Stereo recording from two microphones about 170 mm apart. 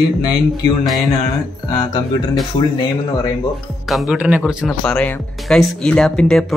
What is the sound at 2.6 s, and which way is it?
Speech, 25° left (ahead or behind).